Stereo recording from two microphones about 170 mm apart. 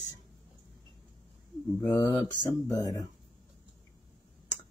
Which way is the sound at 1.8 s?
15° left (ahead or behind).